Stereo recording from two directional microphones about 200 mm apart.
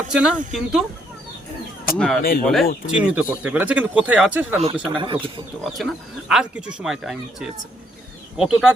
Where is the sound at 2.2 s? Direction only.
45° left (ahead or behind).